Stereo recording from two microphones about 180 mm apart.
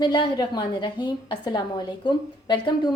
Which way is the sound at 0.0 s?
25° left (ahead or behind).